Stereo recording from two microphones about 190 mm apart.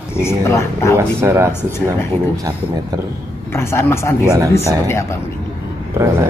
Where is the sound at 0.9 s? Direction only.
15° right (ahead or behind).